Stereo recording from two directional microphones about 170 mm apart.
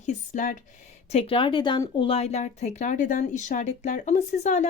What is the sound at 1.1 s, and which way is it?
Speech, 35° left (ahead or behind).